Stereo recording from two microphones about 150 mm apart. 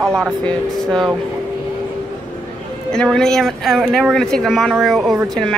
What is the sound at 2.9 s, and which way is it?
Speech, 5° left (ahead or behind).